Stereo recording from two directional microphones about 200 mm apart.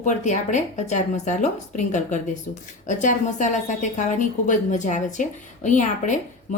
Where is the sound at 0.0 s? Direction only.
35° left (ahead or behind).